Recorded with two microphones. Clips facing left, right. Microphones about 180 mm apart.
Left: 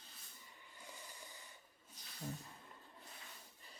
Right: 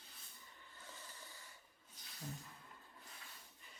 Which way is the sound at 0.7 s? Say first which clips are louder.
Left 2 dB; 15° left (ahead or behind).